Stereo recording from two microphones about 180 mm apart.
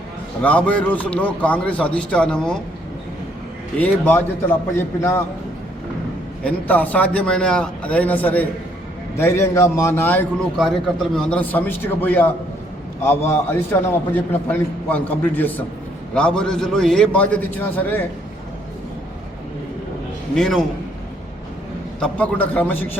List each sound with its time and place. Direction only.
0.4 s a man's voice: 5° left (ahead or behind)
3.8 s a man's voice: 10° left (ahead or behind)
6.4 s a man's voice: 10° left (ahead or behind)
10.6 s a man's voice: centre (ahead or behind)
20.3 s a man's voice: centre (ahead or behind)
22.0 s a man's voice: 5° left (ahead or behind)